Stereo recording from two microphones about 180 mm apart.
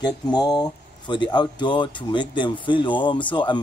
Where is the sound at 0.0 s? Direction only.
25° left (ahead or behind).